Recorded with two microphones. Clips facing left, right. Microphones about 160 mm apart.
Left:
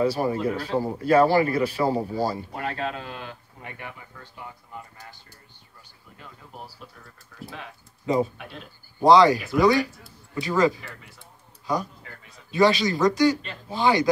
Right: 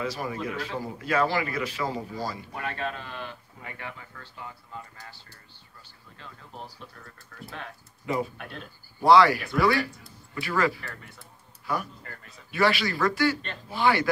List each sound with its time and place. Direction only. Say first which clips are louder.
0.0 s a man's voice: left 8 dB; 30° left (ahead or behind)
3.6 s speech: left 1 dB; 15° left (ahead or behind); by 8.6 s centre (ahead or behind)
9.0 s speech: left 3 dB; 20° left (ahead or behind)
10.9 s speech: right 1 dB; centre (ahead or behind)
11.6 s speech: left 4 dB; 15° left (ahead or behind)
12.0 s a sound: right 1 dB; centre (ahead or behind)
12.5 s speech: left 5 dB; 20° left (ahead or behind)